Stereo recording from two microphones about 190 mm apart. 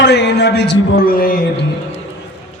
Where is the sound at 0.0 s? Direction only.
65° left (ahead or behind).